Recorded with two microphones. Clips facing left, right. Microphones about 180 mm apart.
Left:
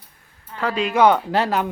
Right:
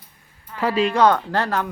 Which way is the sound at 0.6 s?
Centre (ahead or behind).